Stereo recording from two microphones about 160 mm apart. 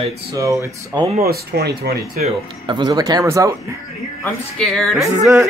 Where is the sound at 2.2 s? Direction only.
30° right (ahead or behind).